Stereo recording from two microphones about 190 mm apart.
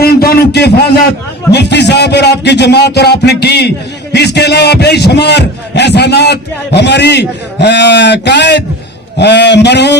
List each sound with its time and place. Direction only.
0.0 s a man's voice: 55° left (ahead or behind)